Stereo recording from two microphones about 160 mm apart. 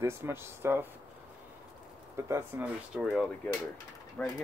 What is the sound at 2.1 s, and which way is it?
Speech, 15° right (ahead or behind).